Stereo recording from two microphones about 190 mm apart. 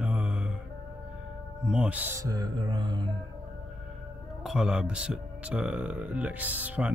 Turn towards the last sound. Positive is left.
turn(degrees=-10)  # may be behind; listen again after turning